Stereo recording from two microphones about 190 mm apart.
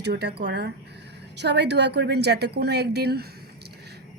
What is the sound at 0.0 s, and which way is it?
A woman's voice, 60° right (ahead or behind).